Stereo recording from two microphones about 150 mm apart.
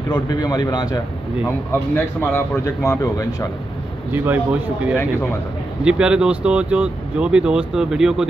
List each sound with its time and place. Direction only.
0.1 s speech: 25° left (ahead or behind)
2.1 s speech: 20° left (ahead or behind)
4.1 s speech: 10° right (ahead or behind)